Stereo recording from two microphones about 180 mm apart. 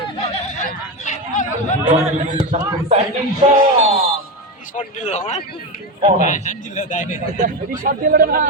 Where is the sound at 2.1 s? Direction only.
40° right (ahead or behind).